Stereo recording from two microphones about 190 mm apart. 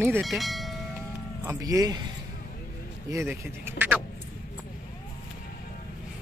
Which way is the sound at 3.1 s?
10° right (ahead or behind).